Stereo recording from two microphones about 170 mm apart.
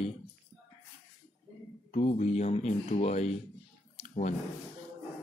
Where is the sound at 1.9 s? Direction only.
40° left (ahead or behind).